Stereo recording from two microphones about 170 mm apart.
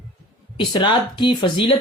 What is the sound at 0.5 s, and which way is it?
Speech, 25° left (ahead or behind).